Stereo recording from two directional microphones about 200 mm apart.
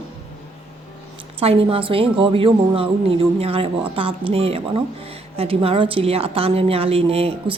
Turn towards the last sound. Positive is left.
turn(degrees=-30)  # may be behind; listen again after turning